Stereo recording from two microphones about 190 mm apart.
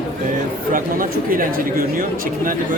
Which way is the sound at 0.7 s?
45° right (ahead or behind).